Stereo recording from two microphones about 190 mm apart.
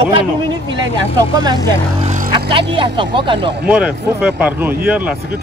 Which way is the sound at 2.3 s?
25° right (ahead or behind).